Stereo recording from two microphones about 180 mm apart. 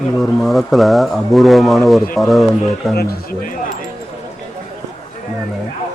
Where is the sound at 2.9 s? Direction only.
60° left (ahead or behind).